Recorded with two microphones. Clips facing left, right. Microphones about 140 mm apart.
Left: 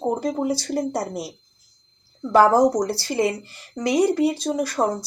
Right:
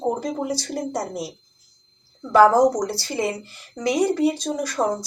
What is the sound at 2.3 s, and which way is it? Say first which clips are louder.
Speech: right 1 dB; 30° left (ahead or behind).